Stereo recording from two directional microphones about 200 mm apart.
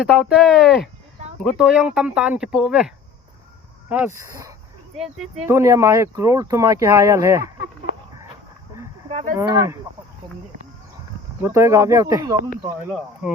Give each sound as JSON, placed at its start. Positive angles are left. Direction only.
{"t": 0.0, "sound": "speech", "side_deg": -5}
{"t": 4.9, "sound": "speech", "side_deg": 0}
{"t": 5.5, "sound": "speech", "side_deg": -15}
{"t": 9.0, "sound": "speech", "side_deg": -30}
{"t": 9.4, "sound": "speech", "side_deg": -15}
{"t": 11.4, "sound": "speech", "side_deg": -15}
{"t": 13.2, "sound": "speech", "side_deg": 0}